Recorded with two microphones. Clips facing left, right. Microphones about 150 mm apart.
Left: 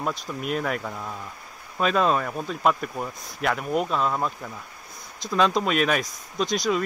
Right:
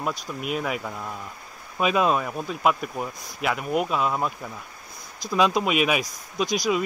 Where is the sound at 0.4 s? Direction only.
5° right (ahead or behind).